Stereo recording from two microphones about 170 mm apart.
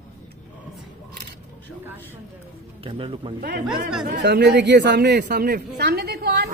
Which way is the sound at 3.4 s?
55° right (ahead or behind).